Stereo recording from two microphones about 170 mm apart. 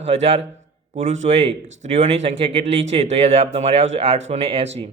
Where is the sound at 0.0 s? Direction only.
40° right (ahead or behind).